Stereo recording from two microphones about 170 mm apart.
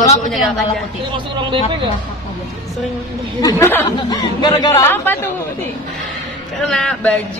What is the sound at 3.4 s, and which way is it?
Speech, 20° left (ahead or behind).